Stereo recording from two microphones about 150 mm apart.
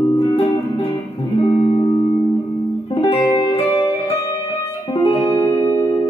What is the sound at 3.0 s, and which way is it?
Music, 35° left (ahead or behind).